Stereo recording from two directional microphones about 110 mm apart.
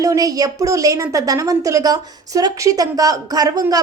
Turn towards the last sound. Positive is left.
turn(degrees=-35)  # may be behind; listen again after turning